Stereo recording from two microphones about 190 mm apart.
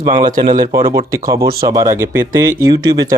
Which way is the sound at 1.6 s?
15° right (ahead or behind).